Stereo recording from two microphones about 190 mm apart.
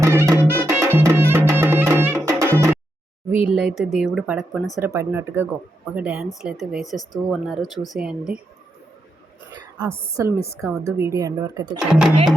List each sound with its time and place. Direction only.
0.0 s music: 15° right (ahead or behind)
3.3 s speech: 5° right (ahead or behind)
4.8 s a woman's voice: 15° right (ahead or behind)
6.8 s speech: 20° left (ahead or behind)
7.3 s speech: centre (ahead or behind)
10.2 s a woman's voice: 15° right (ahead or behind)